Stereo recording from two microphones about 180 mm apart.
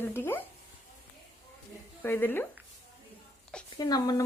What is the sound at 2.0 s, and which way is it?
Speech, 10° left (ahead or behind).